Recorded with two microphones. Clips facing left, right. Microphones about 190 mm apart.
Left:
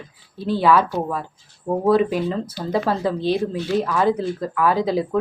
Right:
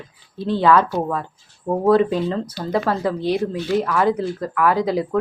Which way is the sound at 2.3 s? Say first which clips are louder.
Right 1 dB; 15° left (ahead or behind).